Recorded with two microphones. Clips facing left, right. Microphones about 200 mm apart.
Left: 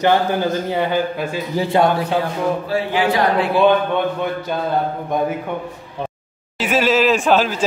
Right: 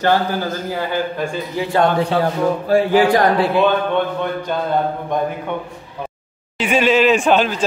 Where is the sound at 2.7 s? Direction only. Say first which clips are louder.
Right 9 dB; 45° right (ahead or behind).